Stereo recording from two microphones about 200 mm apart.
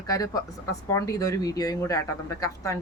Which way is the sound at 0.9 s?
15° left (ahead or behind).